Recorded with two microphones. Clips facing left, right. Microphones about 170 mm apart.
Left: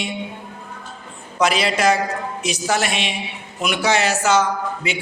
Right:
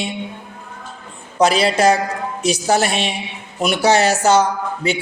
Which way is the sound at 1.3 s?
30° right (ahead or behind).